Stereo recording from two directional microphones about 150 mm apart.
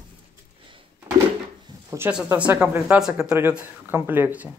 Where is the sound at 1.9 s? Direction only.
20° right (ahead or behind).